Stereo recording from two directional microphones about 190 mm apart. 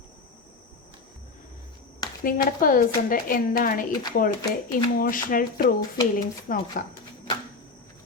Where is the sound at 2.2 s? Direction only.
45° left (ahead or behind).